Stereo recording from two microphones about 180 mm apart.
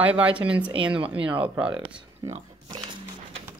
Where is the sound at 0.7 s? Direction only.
30° right (ahead or behind).